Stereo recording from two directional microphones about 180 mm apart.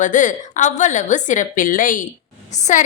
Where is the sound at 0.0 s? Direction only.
45° left (ahead or behind).